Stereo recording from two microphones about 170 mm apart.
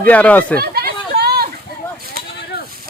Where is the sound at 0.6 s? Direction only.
65° right (ahead or behind).